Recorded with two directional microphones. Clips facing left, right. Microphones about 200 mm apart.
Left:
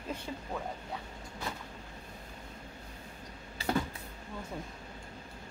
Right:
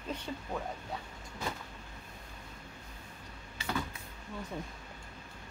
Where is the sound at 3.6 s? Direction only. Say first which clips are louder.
Left 5 dB; 35° left (ahead or behind).